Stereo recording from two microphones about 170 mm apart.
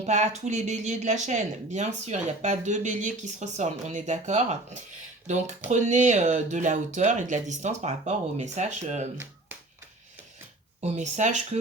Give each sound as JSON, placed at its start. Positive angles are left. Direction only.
{"t": 0.0, "sound": "speech", "side_deg": -40}
{"t": 10.8, "sound": "speech", "side_deg": -40}